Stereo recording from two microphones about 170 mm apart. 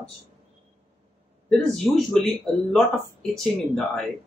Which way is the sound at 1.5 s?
Centre (ahead or behind).